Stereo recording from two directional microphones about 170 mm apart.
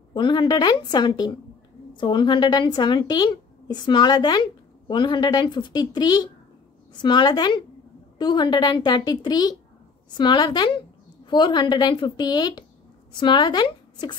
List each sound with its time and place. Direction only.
0.1 s a woman's voice: 25° left (ahead or behind)